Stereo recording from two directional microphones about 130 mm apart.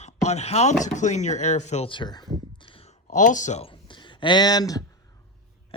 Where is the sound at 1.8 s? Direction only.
35° left (ahead or behind).